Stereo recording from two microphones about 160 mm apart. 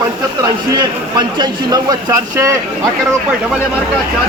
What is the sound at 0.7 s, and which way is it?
Speech, 25° right (ahead or behind).